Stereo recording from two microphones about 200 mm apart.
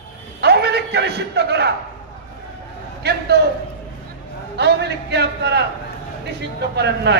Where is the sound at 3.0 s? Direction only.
55° right (ahead or behind).